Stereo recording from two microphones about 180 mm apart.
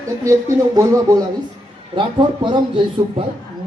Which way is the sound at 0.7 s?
20° right (ahead or behind).